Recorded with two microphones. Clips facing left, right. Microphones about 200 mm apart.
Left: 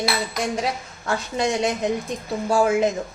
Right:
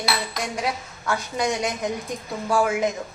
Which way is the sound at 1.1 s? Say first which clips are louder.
Left 2 dB; 25° left (ahead or behind).